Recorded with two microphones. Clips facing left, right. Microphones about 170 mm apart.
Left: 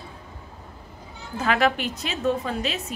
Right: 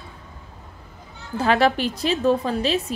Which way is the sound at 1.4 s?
30° right (ahead or behind).